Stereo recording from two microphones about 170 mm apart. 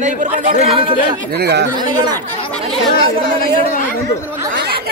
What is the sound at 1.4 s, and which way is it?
Speech, 75° right (ahead or behind).